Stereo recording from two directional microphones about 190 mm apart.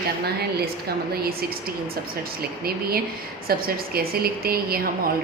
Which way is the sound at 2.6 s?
55° right (ahead or behind).